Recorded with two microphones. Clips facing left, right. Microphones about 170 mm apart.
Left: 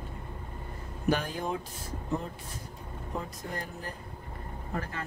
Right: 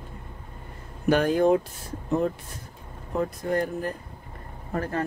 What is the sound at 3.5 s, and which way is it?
Speech, 55° right (ahead or behind).